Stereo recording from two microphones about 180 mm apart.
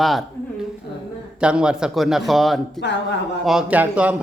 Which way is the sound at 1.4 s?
5° right (ahead or behind).